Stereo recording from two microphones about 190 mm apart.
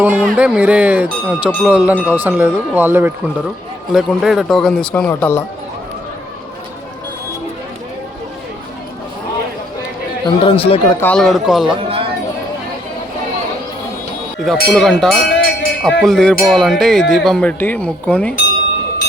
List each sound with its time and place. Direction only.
0.0 s speech: 5° right (ahead or behind)
10.2 s speech: 30° left (ahead or behind)
11.0 s speech: 5° left (ahead or behind)
11.8 s a sound: 30° right (ahead or behind)
14.4 s speech: centre (ahead or behind)